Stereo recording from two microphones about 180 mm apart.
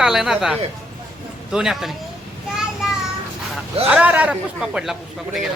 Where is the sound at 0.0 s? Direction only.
Centre (ahead or behind).